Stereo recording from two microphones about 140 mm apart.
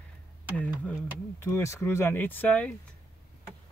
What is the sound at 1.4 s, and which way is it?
Speech, 20° left (ahead or behind).